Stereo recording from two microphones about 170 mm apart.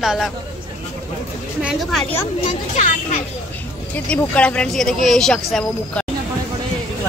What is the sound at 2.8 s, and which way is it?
Speech, 45° left (ahead or behind).